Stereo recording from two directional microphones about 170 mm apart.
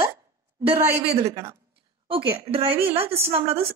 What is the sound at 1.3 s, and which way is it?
Speech, 20° right (ahead or behind).